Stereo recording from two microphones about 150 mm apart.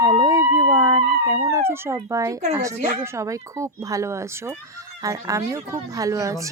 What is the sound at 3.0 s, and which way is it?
Speech, 20° right (ahead or behind).